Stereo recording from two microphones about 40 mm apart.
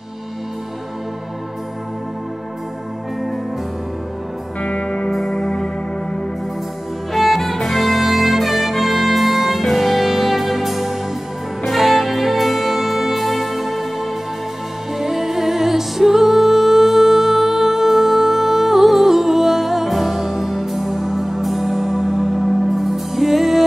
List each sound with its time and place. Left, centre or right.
4.6 s music: left
5.1 s music: centre
7.1 s music: centre
15.0 s music: centre